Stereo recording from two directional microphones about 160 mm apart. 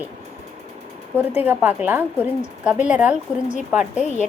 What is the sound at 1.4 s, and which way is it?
A woman's voice, 10° right (ahead or behind).